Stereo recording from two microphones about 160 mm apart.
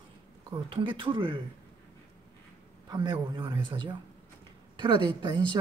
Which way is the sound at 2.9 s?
25° right (ahead or behind).